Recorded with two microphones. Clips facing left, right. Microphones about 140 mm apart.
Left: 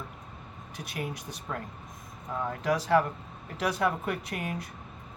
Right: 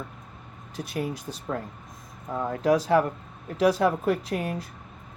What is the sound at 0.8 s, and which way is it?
Speech, 30° right (ahead or behind).